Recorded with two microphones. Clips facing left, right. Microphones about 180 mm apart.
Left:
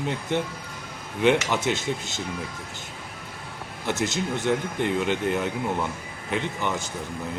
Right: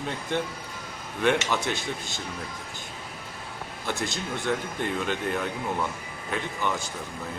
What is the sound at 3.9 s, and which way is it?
Speech, 20° left (ahead or behind).